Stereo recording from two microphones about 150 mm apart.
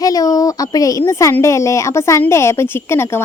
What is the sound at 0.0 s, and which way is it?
A woman's voice, 25° left (ahead or behind).